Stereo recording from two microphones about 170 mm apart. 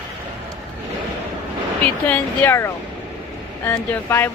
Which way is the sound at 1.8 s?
10° left (ahead or behind).